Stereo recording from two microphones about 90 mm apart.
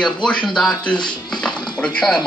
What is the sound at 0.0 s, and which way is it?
A woman's voice, 10° left (ahead or behind).